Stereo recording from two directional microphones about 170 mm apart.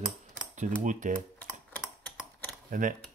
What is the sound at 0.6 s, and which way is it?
Speech, 45° right (ahead or behind).